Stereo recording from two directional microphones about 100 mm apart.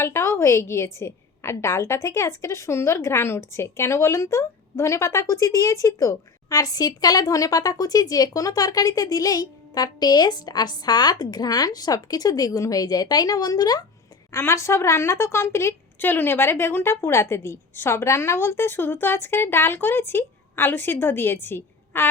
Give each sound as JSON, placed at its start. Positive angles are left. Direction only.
{"t": 0.0, "sound": "a woman's voice", "side_deg": 25}
{"t": 14.3, "sound": "a woman's voice", "side_deg": 25}